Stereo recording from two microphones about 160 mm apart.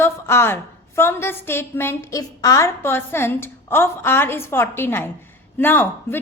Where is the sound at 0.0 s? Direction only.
15° left (ahead or behind).